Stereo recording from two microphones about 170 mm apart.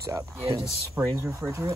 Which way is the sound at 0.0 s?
20° right (ahead or behind).